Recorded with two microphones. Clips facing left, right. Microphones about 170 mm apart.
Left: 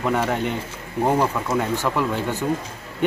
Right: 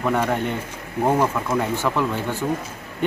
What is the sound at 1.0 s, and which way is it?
Speech, 5° right (ahead or behind).